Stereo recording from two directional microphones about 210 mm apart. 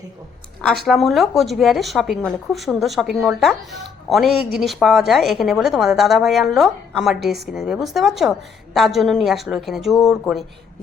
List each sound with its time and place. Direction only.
0.9 s a woman's voice: centre (ahead or behind)